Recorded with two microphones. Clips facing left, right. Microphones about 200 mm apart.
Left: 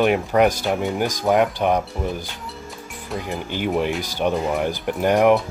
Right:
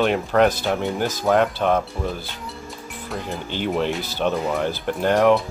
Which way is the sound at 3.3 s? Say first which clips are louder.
Left 1 dB; 15° left (ahead or behind).